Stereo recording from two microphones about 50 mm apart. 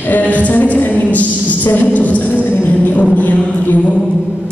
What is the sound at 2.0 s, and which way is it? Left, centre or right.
Music, left.